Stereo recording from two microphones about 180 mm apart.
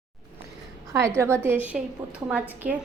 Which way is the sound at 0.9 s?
15° right (ahead or behind).